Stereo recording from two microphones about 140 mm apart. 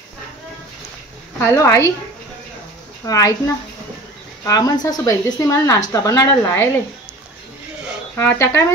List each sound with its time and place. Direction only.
1.4 s speech: 20° left (ahead or behind)
3.1 s speech: 25° left (ahead or behind)
8.2 s speech: 15° left (ahead or behind)